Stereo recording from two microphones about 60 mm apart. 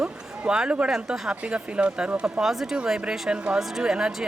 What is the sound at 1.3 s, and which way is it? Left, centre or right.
Speech, centre.